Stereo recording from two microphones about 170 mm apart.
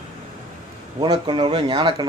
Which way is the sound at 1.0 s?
25° right (ahead or behind).